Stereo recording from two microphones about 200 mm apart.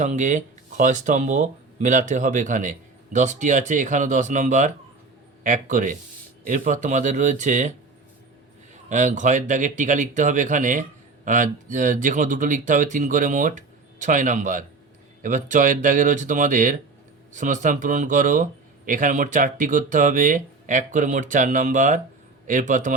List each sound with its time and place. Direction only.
0.0 s speech: 40° right (ahead or behind)
8.7 s speech: 40° right (ahead or behind)